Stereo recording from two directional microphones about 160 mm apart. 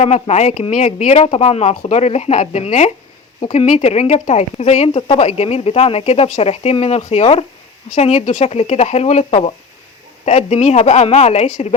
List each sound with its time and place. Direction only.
0.0 s speech: 45° left (ahead or behind)